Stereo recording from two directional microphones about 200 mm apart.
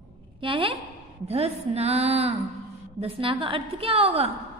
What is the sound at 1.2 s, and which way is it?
A woman's voice, 30° right (ahead or behind).